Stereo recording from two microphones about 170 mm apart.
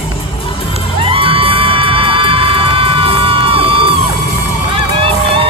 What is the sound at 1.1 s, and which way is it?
Music, 30° right (ahead or behind).